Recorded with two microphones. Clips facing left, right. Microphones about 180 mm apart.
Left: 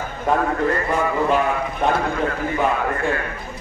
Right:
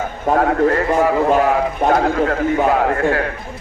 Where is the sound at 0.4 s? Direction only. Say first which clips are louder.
Right 6 dB; 75° right (ahead or behind).